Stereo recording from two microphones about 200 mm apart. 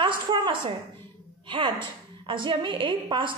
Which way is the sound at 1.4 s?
25° right (ahead or behind).